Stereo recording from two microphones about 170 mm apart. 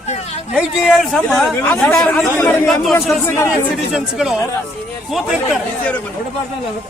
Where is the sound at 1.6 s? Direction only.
15° left (ahead or behind).